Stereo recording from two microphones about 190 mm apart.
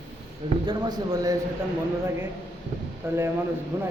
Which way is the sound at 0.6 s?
25° right (ahead or behind).